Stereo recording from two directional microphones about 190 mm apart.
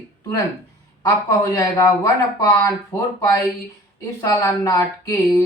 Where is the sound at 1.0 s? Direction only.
15° left (ahead or behind).